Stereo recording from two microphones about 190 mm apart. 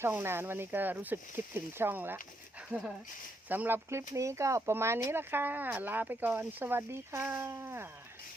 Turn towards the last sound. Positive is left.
turn(degrees=-15)  # may be behind; listen again after turning